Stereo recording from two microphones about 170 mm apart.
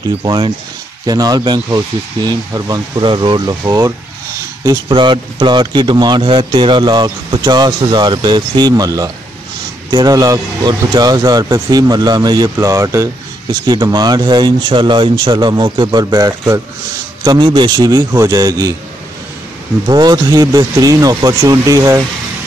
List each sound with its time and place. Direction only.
0.2 s speech: 30° right (ahead or behind)
19.9 s speech: 25° right (ahead or behind)